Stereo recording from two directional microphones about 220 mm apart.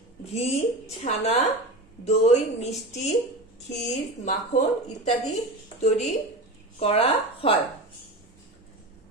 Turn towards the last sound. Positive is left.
turn(degrees=25)  # may be behind; listen again after turning